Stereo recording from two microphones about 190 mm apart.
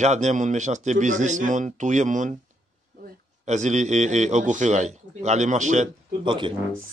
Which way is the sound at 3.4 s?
40° right (ahead or behind).